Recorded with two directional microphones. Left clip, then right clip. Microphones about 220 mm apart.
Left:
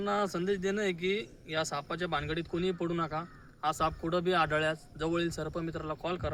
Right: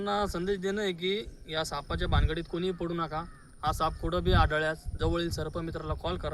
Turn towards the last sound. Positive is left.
turn(degrees=5)  # may be behind; listen again after turning